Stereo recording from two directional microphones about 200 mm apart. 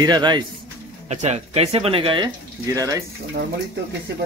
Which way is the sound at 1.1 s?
35° right (ahead or behind).